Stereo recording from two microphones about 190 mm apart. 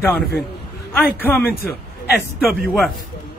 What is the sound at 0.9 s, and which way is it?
Speech, 10° left (ahead or behind).